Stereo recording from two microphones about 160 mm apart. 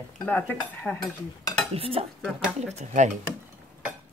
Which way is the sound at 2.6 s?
45° right (ahead or behind).